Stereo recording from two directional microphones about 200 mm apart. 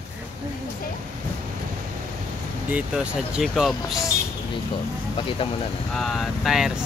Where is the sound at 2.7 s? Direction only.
5° right (ahead or behind).